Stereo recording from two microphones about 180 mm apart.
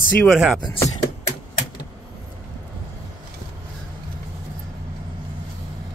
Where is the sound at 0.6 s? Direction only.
20° left (ahead or behind).